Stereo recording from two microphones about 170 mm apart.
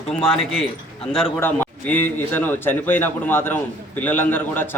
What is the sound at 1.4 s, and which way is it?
A man's voice, 10° left (ahead or behind).